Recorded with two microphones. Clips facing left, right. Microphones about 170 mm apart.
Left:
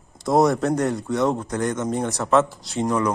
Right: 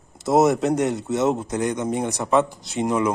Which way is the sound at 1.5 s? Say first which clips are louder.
Even; 15° right (ahead or behind).